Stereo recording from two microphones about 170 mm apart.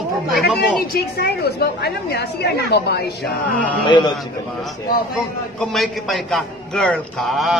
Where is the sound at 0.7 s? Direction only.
65° left (ahead or behind).